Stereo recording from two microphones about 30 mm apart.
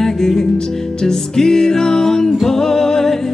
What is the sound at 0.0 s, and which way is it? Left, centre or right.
Music, centre.